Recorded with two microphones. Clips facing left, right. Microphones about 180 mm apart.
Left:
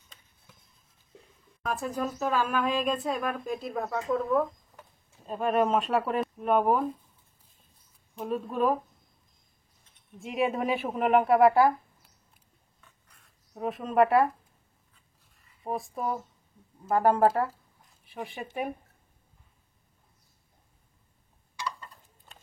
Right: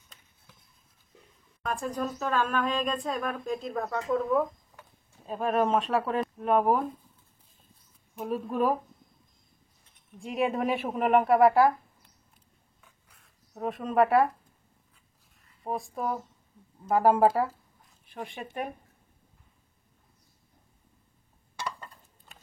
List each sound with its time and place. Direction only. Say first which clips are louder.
1.6 s speech: even; 5° left (ahead or behind)
8.2 s speech: even; 5° right (ahead or behind)
10.1 s speech: even; centre (ahead or behind)
12.8 s a sound: even; 5° right (ahead or behind)
15.3 s speech: even; centre (ahead or behind)
21.5 s a sound: even; 50° right (ahead or behind)